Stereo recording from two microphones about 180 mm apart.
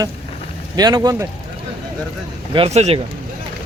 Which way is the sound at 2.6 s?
35° right (ahead or behind).